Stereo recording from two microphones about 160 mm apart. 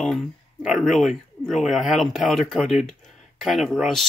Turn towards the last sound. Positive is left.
turn(degrees=0)  # may be behind; listen again after turning